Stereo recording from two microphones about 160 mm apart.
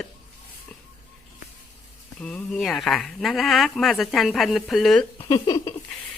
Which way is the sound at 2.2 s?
5° left (ahead or behind).